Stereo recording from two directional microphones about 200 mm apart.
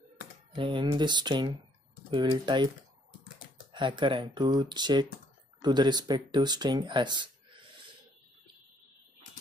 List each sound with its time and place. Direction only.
0.6 s speech: 25° right (ahead or behind)
3.7 s speech: 25° right (ahead or behind)